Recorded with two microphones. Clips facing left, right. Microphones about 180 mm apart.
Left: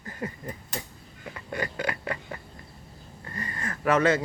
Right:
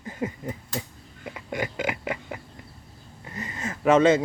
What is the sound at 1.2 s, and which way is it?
Burping, 15° right (ahead or behind).